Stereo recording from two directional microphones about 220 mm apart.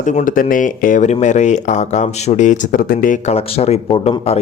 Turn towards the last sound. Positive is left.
turn(degrees=25)  # may be behind; listen again after turning